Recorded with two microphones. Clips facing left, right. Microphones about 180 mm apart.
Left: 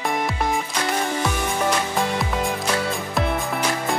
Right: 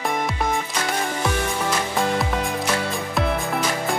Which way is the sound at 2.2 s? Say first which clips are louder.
Even; centre (ahead or behind).